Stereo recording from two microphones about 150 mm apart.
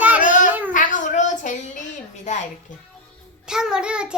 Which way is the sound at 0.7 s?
60° left (ahead or behind).